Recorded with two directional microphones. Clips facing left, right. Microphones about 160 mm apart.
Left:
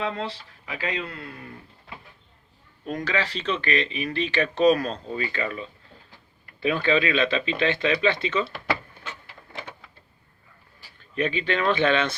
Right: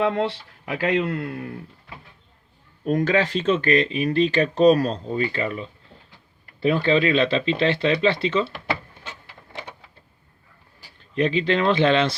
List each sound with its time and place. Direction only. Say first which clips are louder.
0.0 s a man's voice: right 7 dB; 60° right (ahead or behind)
2.8 s speech: right 7 dB; 50° right (ahead or behind); by 8.4 s 30° right (ahead or behind)
11.1 s speech: right 5 dB; 30° right (ahead or behind)